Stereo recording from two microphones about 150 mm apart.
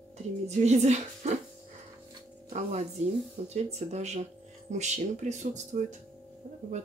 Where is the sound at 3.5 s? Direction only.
50° right (ahead or behind).